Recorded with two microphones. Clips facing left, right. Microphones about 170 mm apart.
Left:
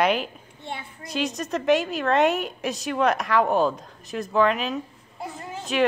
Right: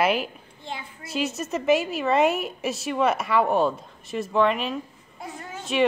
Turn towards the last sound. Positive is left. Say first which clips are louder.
# even
turn(degrees=0)  # may be behind; listen again after turning